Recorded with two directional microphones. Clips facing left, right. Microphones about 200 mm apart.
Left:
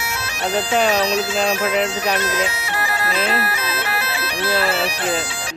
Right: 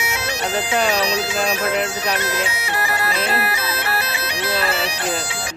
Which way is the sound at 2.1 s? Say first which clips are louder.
Left 2 dB; 15° right (ahead or behind).